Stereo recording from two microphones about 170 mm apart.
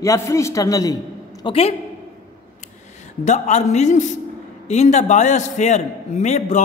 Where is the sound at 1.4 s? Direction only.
35° left (ahead or behind).